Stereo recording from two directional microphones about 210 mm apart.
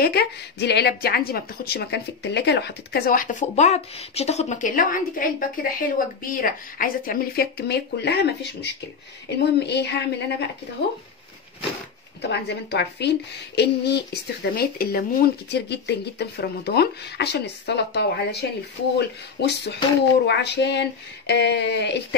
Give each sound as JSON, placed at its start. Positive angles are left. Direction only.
{"t": 0.0, "sound": "a woman's voice", "side_deg": 50}
{"t": 12.2, "sound": "a woman's voice", "side_deg": 55}